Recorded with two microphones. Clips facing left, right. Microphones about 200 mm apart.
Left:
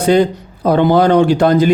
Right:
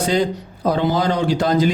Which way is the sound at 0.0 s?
60° left (ahead or behind).